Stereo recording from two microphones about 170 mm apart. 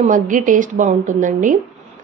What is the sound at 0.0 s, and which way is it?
A woman's voice, 50° right (ahead or behind).